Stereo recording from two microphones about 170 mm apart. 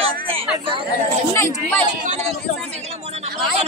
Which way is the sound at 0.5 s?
30° right (ahead or behind).